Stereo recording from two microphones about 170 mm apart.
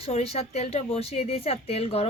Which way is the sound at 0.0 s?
35° left (ahead or behind).